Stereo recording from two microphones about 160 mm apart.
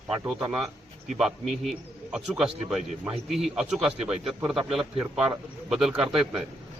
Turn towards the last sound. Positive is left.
turn(degrees=-5)  # may be behind; listen again after turning